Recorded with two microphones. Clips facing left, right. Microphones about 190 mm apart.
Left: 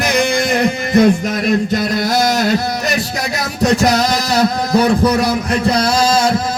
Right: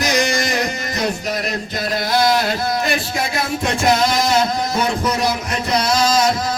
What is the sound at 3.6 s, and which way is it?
Music, 40° left (ahead or behind).